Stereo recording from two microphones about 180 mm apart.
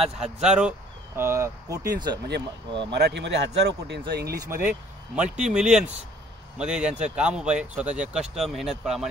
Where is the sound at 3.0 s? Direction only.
70° right (ahead or behind).